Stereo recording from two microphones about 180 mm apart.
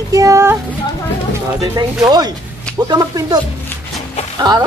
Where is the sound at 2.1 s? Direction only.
20° right (ahead or behind).